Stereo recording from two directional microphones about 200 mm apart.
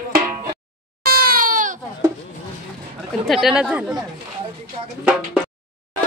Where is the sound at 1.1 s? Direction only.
50° right (ahead or behind).